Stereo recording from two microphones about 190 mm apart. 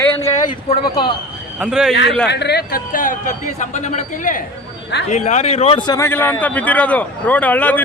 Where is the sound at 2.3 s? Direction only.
60° left (ahead or behind).